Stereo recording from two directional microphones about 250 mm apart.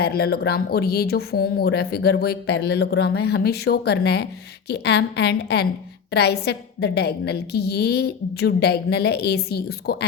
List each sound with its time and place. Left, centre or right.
0.0 s speech: left